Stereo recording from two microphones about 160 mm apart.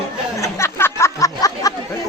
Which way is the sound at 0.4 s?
15° left (ahead or behind).